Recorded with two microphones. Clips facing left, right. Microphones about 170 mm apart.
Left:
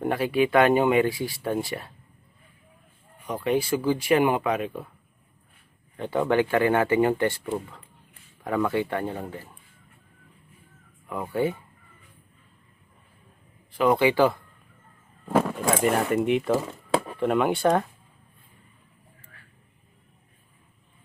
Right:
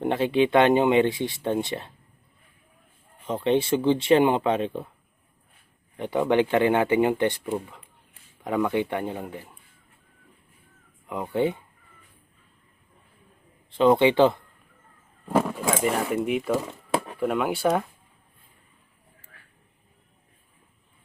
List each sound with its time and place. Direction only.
0.0 s speech: 25° right (ahead or behind)
3.2 s speech: 25° right (ahead or behind)
6.0 s speech: 15° right (ahead or behind)
11.0 s speech: 20° right (ahead or behind)
13.7 s speech: 25° right (ahead or behind)
15.4 s a sound: 5° right (ahead or behind)
15.8 s speech: 5° right (ahead or behind)